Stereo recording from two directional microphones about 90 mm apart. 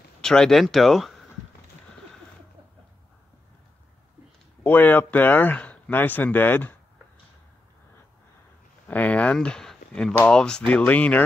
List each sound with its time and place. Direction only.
0.2 s speech: 5° left (ahead or behind)
4.6 s speech: 20° left (ahead or behind)
8.8 s speech: 15° left (ahead or behind)